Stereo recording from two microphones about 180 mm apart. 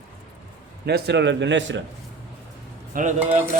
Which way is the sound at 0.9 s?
65° right (ahead or behind).